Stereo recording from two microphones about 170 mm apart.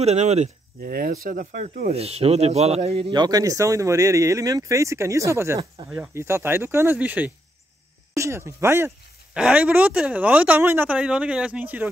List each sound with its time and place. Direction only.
0.0 s speech: 40° right (ahead or behind)
0.8 s speech: 60° right (ahead or behind)
1.9 s speech: 35° right (ahead or behind)
3.1 s speech: 25° right (ahead or behind)